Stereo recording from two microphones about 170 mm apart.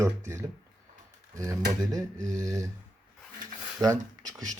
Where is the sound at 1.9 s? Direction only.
20° right (ahead or behind).